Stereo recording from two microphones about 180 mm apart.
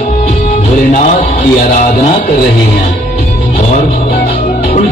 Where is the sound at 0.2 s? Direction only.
35° left (ahead or behind).